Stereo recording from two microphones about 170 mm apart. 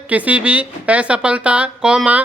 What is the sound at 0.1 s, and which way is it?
Speech, 10° right (ahead or behind).